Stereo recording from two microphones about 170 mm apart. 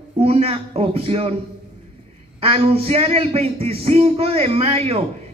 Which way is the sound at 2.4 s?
35° right (ahead or behind).